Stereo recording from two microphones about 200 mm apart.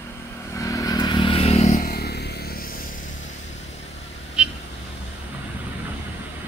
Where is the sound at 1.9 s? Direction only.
55° left (ahead or behind).